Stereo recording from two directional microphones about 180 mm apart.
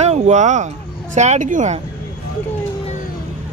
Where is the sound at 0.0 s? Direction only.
40° right (ahead or behind).